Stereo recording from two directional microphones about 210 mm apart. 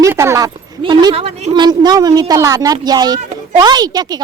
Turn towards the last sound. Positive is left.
turn(degrees=-20)  # may be behind; listen again after turning